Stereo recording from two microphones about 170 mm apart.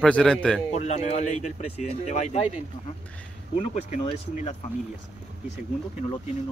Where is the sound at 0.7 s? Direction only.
40° left (ahead or behind).